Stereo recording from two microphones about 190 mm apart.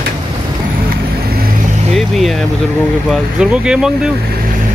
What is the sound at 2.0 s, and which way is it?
Speech, centre (ahead or behind).